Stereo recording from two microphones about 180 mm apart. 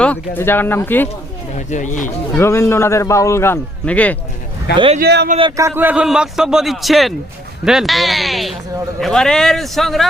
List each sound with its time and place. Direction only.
0.0 s a man's voice: 10° left (ahead or behind)
1.5 s speech: 45° left (ahead or behind)
2.3 s a man's voice: 15° left (ahead or behind)
4.9 s speech: 65° right (ahead or behind)
5.4 s a man's voice: 20° right (ahead or behind); by 10.1 s centre (ahead or behind)